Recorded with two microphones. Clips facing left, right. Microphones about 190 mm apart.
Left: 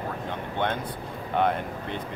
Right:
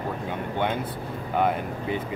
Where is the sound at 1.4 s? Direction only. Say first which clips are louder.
Right 1 dB; 5° right (ahead or behind).